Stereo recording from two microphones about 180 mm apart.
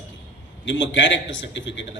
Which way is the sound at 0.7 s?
90° left.